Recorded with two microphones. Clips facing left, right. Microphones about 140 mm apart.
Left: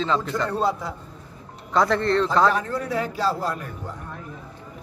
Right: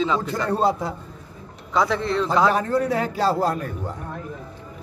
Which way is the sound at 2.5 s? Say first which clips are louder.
Right 4 dB; 60° right (ahead or behind).